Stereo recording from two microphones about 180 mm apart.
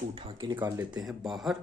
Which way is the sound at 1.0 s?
Centre (ahead or behind).